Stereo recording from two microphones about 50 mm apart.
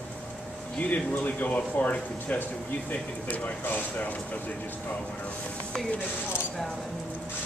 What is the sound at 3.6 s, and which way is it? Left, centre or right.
Speech, left.